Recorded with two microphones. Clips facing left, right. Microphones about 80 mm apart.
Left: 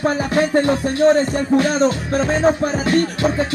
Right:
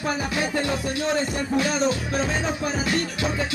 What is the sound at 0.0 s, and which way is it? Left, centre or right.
Speech, left.